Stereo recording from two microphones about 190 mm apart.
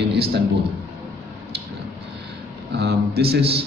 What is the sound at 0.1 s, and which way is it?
Speech, 60° right (ahead or behind).